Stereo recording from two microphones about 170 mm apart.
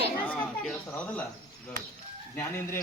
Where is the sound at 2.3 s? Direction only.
15° left (ahead or behind).